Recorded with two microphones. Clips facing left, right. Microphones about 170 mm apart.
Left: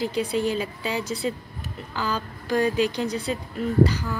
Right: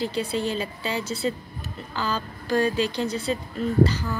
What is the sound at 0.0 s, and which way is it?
Speech, 15° left (ahead or behind).